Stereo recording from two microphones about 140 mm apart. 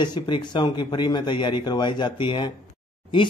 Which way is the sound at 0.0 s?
30° left (ahead or behind).